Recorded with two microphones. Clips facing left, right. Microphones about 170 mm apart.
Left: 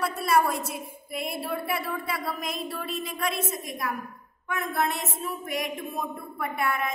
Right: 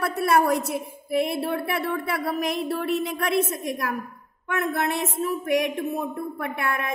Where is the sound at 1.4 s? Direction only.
65° right (ahead or behind).